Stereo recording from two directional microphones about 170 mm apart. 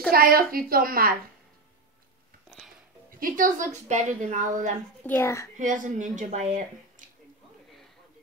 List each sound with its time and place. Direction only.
0.1 s a woman's voice: 60° right (ahead or behind)
3.2 s speech: 55° right (ahead or behind)
5.0 s a child's voice: 15° left (ahead or behind)
5.6 s speech: 45° right (ahead or behind)